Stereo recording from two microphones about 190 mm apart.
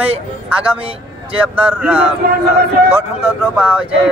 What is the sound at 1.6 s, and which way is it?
Speech, 10° right (ahead or behind).